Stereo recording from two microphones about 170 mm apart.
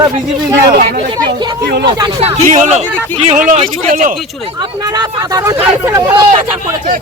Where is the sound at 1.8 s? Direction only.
30° right (ahead or behind).